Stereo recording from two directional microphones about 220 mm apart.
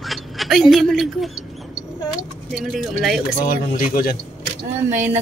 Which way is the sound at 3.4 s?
40° left (ahead or behind).